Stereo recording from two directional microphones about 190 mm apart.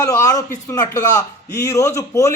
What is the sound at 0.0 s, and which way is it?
A man's voice, 15° left (ahead or behind).